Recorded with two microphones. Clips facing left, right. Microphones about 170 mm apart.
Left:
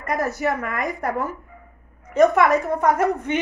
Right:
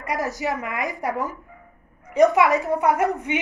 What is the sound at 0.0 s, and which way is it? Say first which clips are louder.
A woman's voice: left 3 dB; 15° right (ahead or behind).